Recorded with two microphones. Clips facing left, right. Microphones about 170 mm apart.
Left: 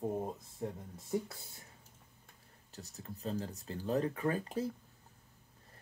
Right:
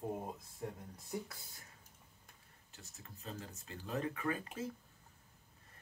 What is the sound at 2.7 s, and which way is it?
Speech, 35° left (ahead or behind).